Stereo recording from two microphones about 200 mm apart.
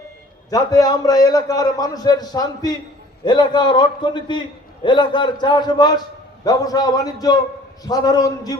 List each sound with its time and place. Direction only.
0.5 s a man's voice: 20° left (ahead or behind)